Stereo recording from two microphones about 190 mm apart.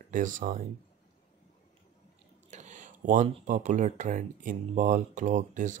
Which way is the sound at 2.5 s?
40° right (ahead or behind).